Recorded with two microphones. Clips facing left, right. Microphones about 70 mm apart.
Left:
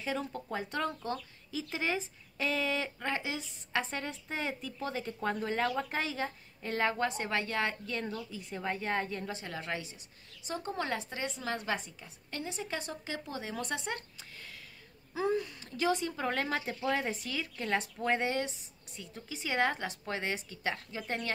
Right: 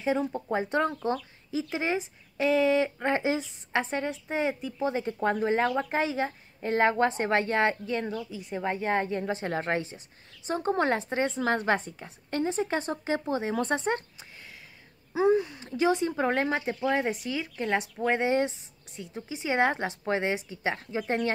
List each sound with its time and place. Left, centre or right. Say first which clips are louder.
0.0 s a woman's voice: right 8 dB; right
15.1 s speech: right 8 dB; right